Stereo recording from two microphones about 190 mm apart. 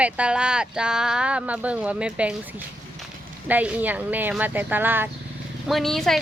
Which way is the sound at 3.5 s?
10° right (ahead or behind).